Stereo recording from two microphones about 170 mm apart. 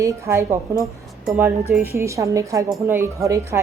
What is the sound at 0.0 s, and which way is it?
Speech, 15° right (ahead or behind).